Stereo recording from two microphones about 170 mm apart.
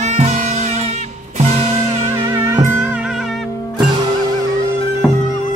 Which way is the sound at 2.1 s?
15° right (ahead or behind).